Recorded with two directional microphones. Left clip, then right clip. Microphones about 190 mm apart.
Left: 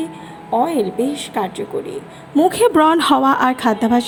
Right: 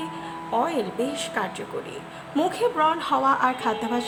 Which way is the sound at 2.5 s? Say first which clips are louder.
Left 9 dB; 40° left (ahead or behind).